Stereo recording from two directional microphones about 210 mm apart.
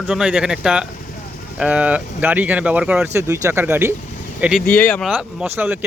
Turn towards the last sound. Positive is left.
turn(degrees=-5)  # may be behind; listen again after turning